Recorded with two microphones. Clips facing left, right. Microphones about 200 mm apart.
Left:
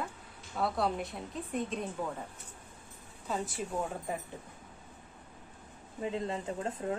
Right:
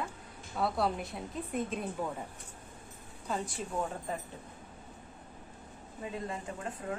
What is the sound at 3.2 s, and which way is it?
Speech, centre (ahead or behind).